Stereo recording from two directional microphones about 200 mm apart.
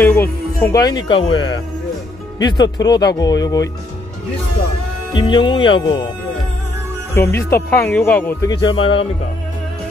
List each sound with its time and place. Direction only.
0.0 s speech: 10° left (ahead or behind)
5.1 s speech: 25° left (ahead or behind)
7.2 s speech: 15° left (ahead or behind)